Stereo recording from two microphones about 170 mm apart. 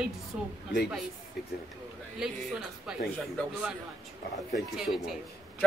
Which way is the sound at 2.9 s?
5° right (ahead or behind).